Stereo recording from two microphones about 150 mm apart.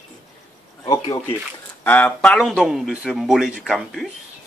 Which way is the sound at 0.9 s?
20° left (ahead or behind).